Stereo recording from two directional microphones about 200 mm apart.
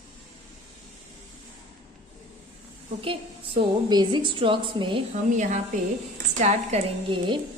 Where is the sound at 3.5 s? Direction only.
20° right (ahead or behind).